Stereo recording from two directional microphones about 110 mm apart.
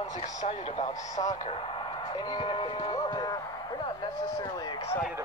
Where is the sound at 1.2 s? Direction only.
65° left (ahead or behind).